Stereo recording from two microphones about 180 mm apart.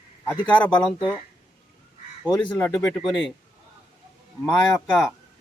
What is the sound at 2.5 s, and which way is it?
Speech, 10° left (ahead or behind).